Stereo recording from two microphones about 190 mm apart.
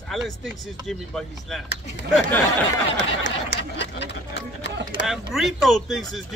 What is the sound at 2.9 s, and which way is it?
Speech, 70° left (ahead or behind).